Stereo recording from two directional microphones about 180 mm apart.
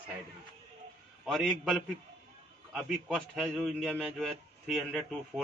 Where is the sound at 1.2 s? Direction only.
Centre (ahead or behind).